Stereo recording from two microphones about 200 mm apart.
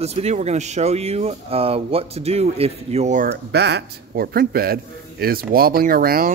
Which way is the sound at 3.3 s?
55° right (ahead or behind).